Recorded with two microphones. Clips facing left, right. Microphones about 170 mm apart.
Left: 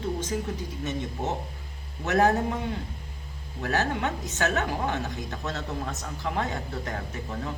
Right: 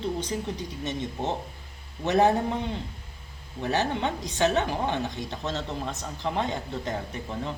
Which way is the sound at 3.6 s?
20° right (ahead or behind).